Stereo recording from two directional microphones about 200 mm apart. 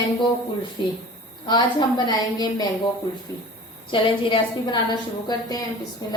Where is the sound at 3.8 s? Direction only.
25° left (ahead or behind).